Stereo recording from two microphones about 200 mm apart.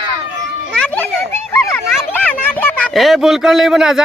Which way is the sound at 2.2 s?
10° left (ahead or behind).